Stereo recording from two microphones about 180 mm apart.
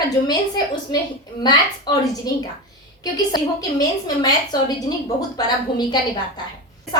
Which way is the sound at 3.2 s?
20° left (ahead or behind).